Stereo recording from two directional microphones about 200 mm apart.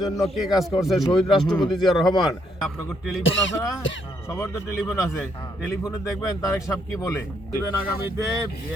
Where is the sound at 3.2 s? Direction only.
70° left (ahead or behind).